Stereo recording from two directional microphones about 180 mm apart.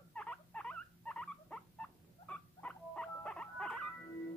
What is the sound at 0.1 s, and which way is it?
Rodents, 5° left (ahead or behind).